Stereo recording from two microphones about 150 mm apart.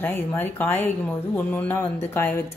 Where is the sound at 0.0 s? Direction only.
15° left (ahead or behind).